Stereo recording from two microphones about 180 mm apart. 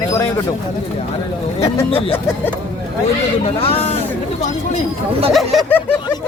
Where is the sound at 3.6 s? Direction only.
35° left (ahead or behind).